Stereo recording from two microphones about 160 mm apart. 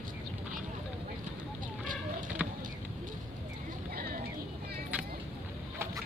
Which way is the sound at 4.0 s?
70° right (ahead or behind).